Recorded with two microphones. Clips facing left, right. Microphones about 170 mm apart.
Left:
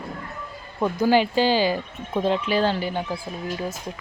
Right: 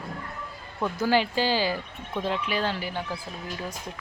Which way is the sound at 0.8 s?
15° left (ahead or behind).